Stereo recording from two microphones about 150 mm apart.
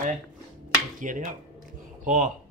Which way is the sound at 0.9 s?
60° right (ahead or behind).